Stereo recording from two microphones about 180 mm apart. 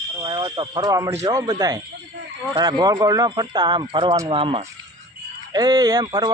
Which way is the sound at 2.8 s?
20° right (ahead or behind).